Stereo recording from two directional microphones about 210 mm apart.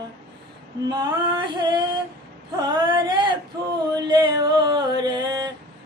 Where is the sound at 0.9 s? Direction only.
20° right (ahead or behind).